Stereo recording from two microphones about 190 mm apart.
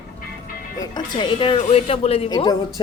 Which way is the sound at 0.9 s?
25° left (ahead or behind).